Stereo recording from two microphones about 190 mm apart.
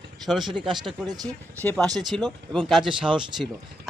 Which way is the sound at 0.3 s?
Centre (ahead or behind).